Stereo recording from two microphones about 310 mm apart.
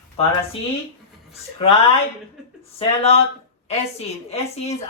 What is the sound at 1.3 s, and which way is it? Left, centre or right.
Speech, centre.